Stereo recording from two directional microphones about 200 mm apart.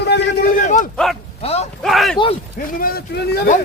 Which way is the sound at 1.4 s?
30° left (ahead or behind).